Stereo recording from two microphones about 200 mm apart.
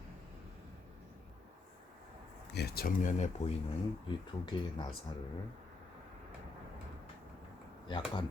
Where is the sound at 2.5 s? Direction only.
55° left (ahead or behind); by 3.5 s 35° left (ahead or behind).